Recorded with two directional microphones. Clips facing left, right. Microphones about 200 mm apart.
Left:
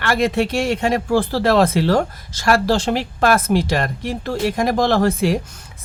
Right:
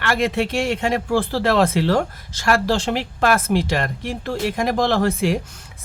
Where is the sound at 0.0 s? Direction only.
40° left (ahead or behind).